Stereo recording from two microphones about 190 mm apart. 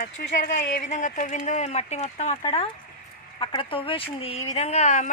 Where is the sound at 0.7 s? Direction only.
40° left (ahead or behind).